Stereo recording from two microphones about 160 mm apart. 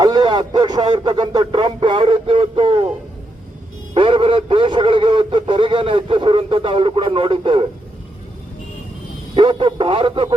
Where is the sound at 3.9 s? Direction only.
30° right (ahead or behind).